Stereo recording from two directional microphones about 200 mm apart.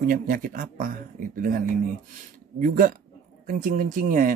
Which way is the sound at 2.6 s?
45° right (ahead or behind).